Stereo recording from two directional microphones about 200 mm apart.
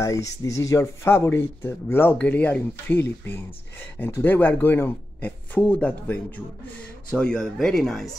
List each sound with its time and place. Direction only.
0.0 s speech: 15° left (ahead or behind)